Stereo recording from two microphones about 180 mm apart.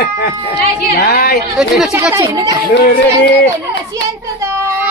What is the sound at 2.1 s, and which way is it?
Speech, 15° right (ahead or behind).